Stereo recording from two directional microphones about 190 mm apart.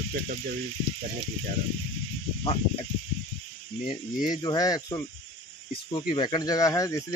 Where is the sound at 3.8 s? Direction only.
20° left (ahead or behind).